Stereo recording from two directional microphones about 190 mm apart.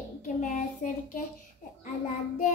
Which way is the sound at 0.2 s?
40° left (ahead or behind).